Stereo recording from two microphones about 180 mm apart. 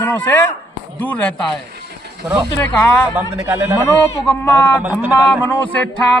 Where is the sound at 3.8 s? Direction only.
15° left (ahead or behind).